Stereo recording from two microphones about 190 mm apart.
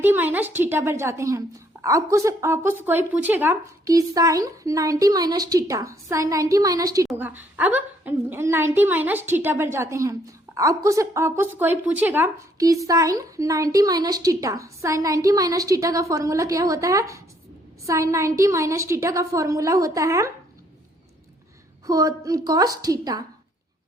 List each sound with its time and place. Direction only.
0.0 s a woman's voice: 10° right (ahead or behind)
21.8 s a woman's voice: 15° right (ahead or behind)